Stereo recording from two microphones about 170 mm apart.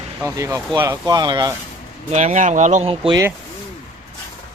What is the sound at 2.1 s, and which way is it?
Speech, 45° right (ahead or behind).